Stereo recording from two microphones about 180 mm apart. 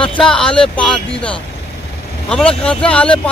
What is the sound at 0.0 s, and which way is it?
Speech, 5° left (ahead or behind).